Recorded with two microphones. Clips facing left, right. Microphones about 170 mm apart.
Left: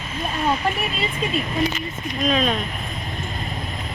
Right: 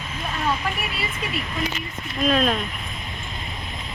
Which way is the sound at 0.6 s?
30° left (ahead or behind).